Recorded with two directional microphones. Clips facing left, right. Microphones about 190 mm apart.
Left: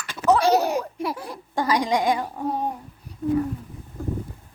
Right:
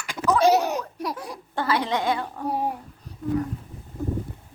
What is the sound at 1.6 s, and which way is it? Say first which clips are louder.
Speech: left 3 dB; 15° left (ahead or behind).